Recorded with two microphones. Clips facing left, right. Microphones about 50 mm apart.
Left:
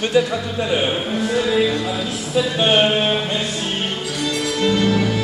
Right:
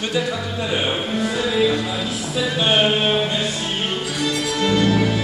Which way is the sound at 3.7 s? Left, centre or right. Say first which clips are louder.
Even; centre.